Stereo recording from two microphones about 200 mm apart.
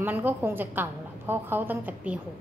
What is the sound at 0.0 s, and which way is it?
A woman's voice, 10° right (ahead or behind).